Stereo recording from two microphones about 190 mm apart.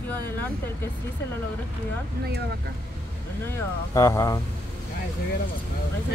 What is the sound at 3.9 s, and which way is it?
Speech, 15° left (ahead or behind).